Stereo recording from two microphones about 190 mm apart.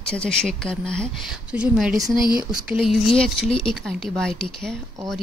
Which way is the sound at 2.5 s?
Centre (ahead or behind).